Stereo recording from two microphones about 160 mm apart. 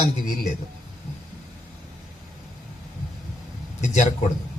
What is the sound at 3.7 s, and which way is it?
Speech, 45° left (ahead or behind).